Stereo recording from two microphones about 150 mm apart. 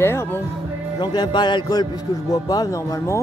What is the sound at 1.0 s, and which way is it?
Speech, 30° left (ahead or behind).